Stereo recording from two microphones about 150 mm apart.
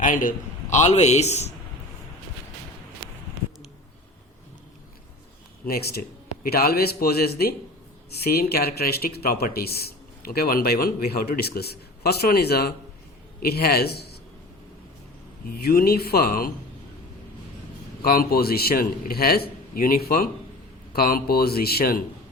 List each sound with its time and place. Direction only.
0.0 s a man's voice: 65° left (ahead or behind); by 1.5 s 45° left (ahead or behind)
5.6 s speech: 90° left
15.4 s speech: 90° left
18.0 s speech: 80° left
19.7 s a man's voice: 75° left (ahead or behind)
20.9 s speech: 90° left